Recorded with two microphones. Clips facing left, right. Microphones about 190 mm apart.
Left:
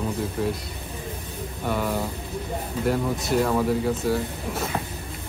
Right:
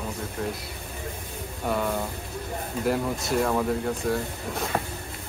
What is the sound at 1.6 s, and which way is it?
Speech, centre (ahead or behind).